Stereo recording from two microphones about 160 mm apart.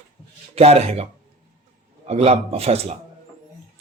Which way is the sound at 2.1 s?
40° right (ahead or behind).